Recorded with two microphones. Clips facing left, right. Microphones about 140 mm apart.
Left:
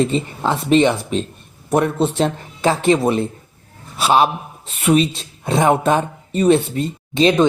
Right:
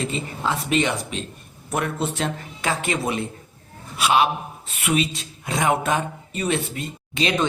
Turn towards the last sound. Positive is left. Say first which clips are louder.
# left 9 dB
turn(degrees=25)  # may be behind; listen again after turning